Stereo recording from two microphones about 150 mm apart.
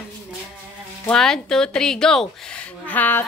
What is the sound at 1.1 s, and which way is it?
Speech, 5° left (ahead or behind).